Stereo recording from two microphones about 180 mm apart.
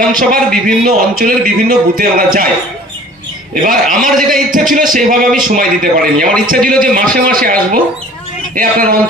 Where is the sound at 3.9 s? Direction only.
50° right (ahead or behind).